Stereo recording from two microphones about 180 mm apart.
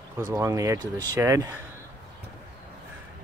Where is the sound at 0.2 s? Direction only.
15° right (ahead or behind).